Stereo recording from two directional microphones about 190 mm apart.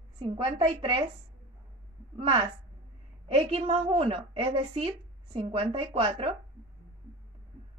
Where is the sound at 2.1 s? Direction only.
25° right (ahead or behind).